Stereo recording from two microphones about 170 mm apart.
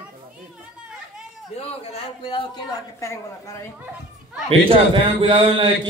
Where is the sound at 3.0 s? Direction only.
15° left (ahead or behind).